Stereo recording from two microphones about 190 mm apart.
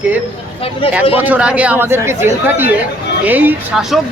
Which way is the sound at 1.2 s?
5° right (ahead or behind).